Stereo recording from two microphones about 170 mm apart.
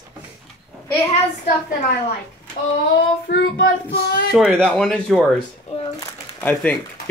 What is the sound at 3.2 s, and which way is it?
Child singing, 75° left (ahead or behind).